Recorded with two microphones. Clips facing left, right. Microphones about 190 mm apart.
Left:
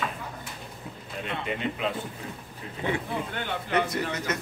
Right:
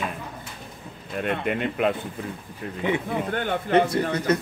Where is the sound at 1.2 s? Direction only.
55° right (ahead or behind).